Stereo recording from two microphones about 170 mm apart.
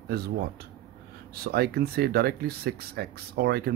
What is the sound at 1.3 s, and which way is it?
Speech, 65° right (ahead or behind).